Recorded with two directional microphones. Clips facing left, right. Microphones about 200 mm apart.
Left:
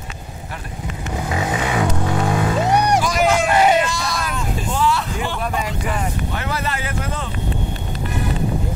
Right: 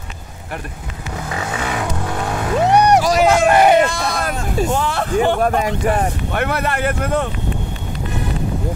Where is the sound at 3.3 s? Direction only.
55° right (ahead or behind).